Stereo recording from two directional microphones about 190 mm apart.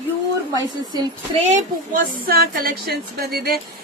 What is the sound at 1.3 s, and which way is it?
Speech, 35° right (ahead or behind).